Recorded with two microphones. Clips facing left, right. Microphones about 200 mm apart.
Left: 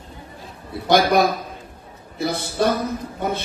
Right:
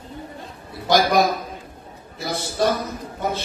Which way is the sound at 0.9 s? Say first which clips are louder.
Left 1 dB; 55° left (ahead or behind).